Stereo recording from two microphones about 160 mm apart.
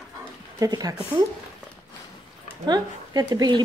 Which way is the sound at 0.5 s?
25° right (ahead or behind).